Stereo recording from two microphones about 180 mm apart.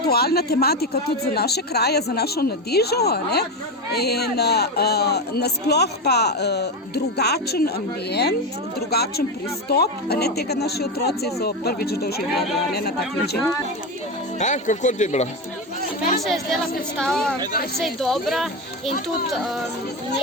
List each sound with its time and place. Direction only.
0.0 s speech: 60° left (ahead or behind)
12.3 s speech: centre (ahead or behind)
12.7 s speech: 65° left (ahead or behind)
14.3 s speech: 40° left (ahead or behind)
16.2 s speech: centre (ahead or behind)